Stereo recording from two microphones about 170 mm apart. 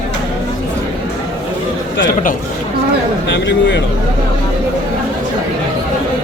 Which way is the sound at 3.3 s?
90° left.